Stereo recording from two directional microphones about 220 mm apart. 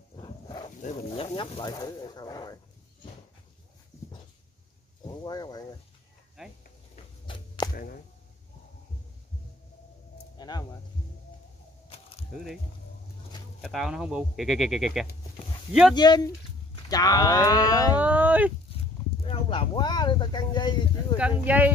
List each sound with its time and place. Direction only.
0.1 s wild animals: 20° left (ahead or behind)
0.8 s speech: 30° left (ahead or behind)
5.0 s speech: 20° left (ahead or behind)
6.4 s speech: centre (ahead or behind)
7.2 s whip: 20° left (ahead or behind)
7.7 s speech: 40° left (ahead or behind)
10.3 s a sound: 20° left (ahead or behind)
13.6 s speech: centre (ahead or behind)
15.9 s speech: 20° left (ahead or behind)
17.9 s speech: 5° right (ahead or behind)
19.2 s speech: 25° left (ahead or behind)
21.2 s speech: 5° right (ahead or behind)